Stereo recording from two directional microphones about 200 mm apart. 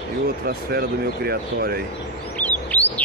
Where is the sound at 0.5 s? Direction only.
50° right (ahead or behind).